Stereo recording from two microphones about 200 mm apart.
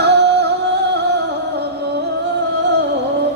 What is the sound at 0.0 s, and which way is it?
Music, 55° right (ahead or behind).